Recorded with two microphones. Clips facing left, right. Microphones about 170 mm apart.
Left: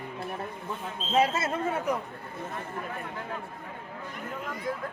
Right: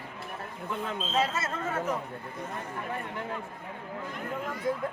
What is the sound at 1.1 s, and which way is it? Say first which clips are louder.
Speech: left 5 dB; 15° left (ahead or behind).